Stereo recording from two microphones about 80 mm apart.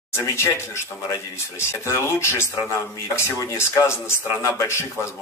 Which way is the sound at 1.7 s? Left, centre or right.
Left.